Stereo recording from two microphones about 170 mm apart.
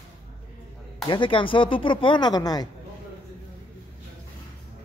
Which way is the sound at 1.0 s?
30° left (ahead or behind).